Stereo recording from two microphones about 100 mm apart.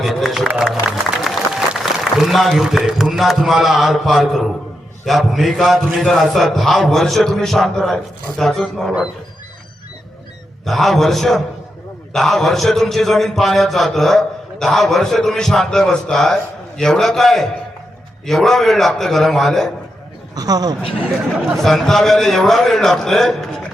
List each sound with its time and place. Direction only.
0.0 s a man's voice: centre (ahead or behind)
0.4 s speech: 15° right (ahead or behind)
0.7 s a man's voice: 5° right (ahead or behind)
10.7 s a man's voice: centre (ahead or behind)
20.3 s speech: 40° right (ahead or behind)
21.6 s a man's voice: centre (ahead or behind)